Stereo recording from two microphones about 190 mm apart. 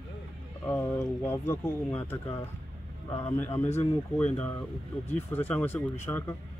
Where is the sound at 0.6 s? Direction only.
10° left (ahead or behind).